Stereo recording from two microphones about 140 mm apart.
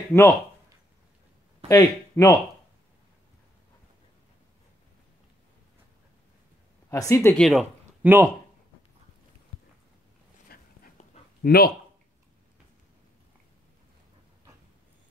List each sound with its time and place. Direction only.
0.1 s speech: 15° left (ahead or behind)
1.7 s speech: 25° left (ahead or behind)
6.9 s speech: 20° left (ahead or behind)
7.3 s speech: centre (ahead or behind)
8.0 s speech: 15° right (ahead or behind)
10.5 s dog: 90° left
11.4 s speech: 90° left